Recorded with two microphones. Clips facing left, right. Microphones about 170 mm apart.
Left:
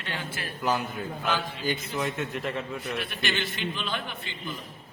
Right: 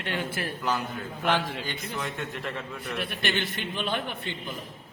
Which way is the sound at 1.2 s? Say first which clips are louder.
Right 4 dB; 85° right.